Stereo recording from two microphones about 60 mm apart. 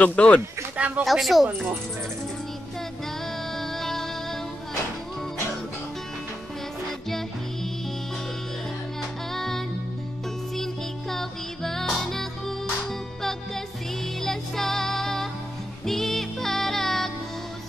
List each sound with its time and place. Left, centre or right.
0.0 s speech: left
0.7 s speech: right
1.0 s speech: centre
3.5 s music: centre
9.3 s music: centre
14.2 s child singing: centre
15.8 s music: centre